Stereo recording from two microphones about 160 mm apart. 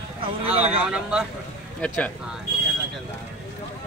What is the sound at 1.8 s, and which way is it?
Speech, 5° left (ahead or behind).